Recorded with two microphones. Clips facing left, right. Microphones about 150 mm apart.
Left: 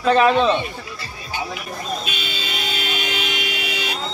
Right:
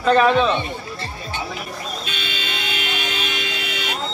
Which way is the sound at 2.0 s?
15° left (ahead or behind).